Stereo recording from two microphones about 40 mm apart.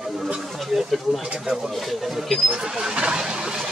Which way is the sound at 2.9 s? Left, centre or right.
Right.